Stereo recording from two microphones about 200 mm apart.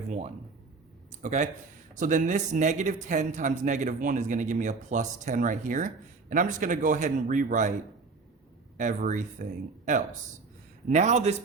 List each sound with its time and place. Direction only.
1.1 s speech: 35° right (ahead or behind)
8.8 s speech: 40° right (ahead or behind)